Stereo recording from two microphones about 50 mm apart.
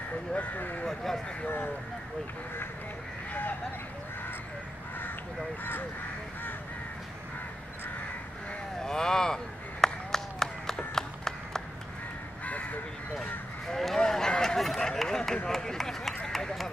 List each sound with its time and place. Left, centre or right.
0.3 s speech: left
0.8 s speech: centre
8.8 s a sound: centre
13.7 s a sound: centre
14.8 s run: centre
15.4 s speech: centre
16.3 s clip-clop: centre